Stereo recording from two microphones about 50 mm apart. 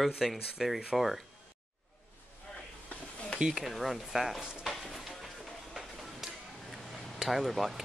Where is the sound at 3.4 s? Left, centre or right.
Centre.